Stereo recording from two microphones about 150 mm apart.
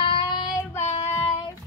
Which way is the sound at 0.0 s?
35° left (ahead or behind).